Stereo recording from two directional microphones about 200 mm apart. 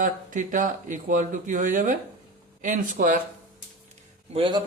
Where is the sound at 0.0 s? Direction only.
40° right (ahead or behind).